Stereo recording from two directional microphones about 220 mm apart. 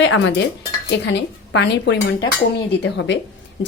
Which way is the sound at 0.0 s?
55° left (ahead or behind).